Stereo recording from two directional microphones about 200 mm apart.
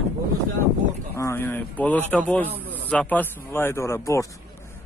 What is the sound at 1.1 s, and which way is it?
Speech, 10° left (ahead or behind).